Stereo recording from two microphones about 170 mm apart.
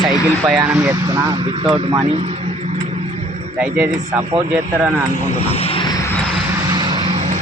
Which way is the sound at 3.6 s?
10° right (ahead or behind).